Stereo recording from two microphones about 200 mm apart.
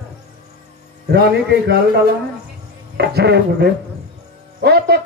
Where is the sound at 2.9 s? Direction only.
55° right (ahead or behind).